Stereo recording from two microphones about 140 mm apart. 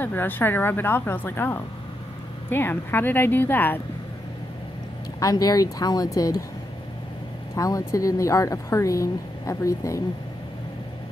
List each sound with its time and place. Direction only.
0.0 s a woman's voice: 15° left (ahead or behind)
5.2 s speech: 25° left (ahead or behind)
7.5 s speech: 25° left (ahead or behind)